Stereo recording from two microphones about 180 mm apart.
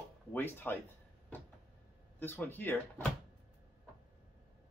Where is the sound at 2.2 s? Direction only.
10° left (ahead or behind).